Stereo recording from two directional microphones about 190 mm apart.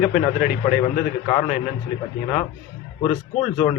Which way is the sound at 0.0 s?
50° left (ahead or behind).